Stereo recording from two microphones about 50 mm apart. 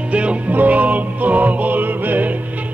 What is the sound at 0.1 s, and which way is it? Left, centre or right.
Music, right.